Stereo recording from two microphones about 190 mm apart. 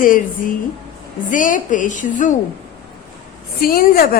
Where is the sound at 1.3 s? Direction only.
45° left (ahead or behind).